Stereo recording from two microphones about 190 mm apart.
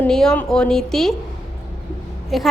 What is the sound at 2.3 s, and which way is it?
Speech, centre (ahead or behind).